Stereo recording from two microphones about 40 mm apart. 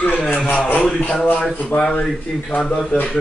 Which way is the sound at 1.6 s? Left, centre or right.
Left.